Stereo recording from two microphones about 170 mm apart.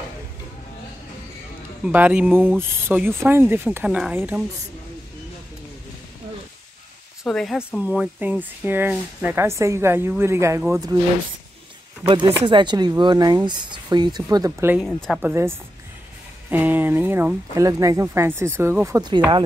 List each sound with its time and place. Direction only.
1.8 s speech: 10° right (ahead or behind)
7.2 s speech: centre (ahead or behind); by 11.0 s 20° right (ahead or behind)
12.0 s speech: 25° right (ahead or behind)
15.1 s speech: 5° right (ahead or behind)
16.4 s speech: 10° right (ahead or behind); by 19.4 s 25° right (ahead or behind)